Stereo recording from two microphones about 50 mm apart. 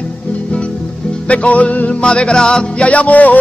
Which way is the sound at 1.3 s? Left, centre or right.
Left.